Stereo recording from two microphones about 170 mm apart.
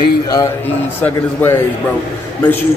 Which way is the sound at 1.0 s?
10° left (ahead or behind).